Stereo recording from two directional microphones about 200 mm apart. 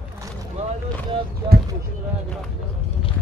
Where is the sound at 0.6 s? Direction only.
30° right (ahead or behind).